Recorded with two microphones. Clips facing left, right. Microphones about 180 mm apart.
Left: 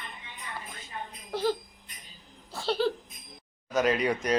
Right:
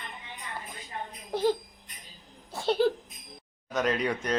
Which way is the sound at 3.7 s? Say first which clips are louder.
Left 2 dB; 5° left (ahead or behind).